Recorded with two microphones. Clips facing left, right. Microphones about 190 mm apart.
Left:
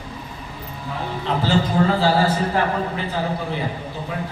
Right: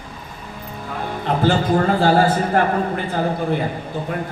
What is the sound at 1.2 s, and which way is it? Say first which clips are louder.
A man's voice: right 2 dB; 50° right (ahead or behind).